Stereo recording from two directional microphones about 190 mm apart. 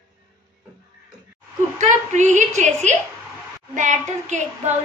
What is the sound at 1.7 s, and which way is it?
A woman's voice, 40° right (ahead or behind).